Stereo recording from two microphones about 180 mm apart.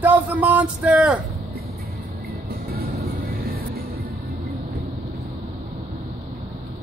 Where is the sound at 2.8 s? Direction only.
55° right (ahead or behind).